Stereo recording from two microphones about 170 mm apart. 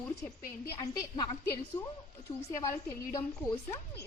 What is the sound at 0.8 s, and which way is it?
Speech, 25° left (ahead or behind).